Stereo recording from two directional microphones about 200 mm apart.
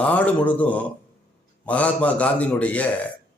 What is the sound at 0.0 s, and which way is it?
Speech, 5° left (ahead or behind).